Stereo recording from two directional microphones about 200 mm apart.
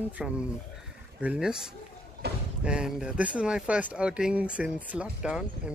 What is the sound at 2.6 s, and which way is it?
Speech, 5° right (ahead or behind).